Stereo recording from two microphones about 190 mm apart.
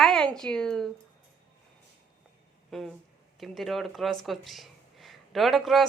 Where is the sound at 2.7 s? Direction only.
Centre (ahead or behind).